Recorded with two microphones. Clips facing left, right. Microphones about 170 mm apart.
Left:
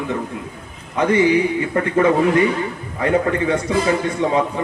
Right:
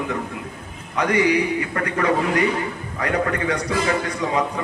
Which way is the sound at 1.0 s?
25° left (ahead or behind).